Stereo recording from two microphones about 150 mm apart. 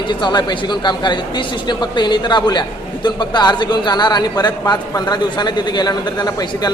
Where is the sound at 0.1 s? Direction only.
30° left (ahead or behind).